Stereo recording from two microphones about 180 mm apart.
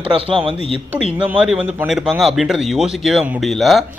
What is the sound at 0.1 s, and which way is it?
Speech, 30° right (ahead or behind).